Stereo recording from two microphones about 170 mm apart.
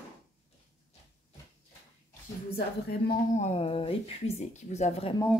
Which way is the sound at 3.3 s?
40° left (ahead or behind).